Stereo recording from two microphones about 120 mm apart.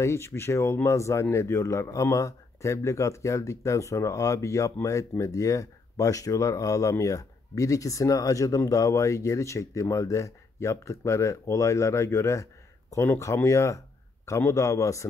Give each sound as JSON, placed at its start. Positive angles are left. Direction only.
{"t": 0.0, "sound": "speech", "side_deg": 20}